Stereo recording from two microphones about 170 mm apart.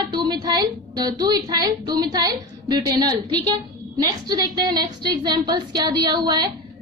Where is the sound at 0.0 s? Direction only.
25° right (ahead or behind).